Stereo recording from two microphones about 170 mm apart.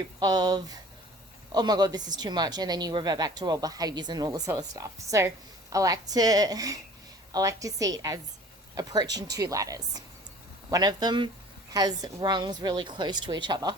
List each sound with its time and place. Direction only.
0.2 s a woman's voice: 25° right (ahead or behind)